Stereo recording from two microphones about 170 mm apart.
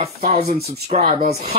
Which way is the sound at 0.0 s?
40° right (ahead or behind).